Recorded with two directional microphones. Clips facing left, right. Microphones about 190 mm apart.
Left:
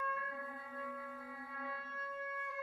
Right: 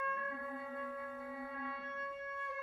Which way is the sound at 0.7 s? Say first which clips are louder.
Right 2 dB; 25° right (ahead or behind).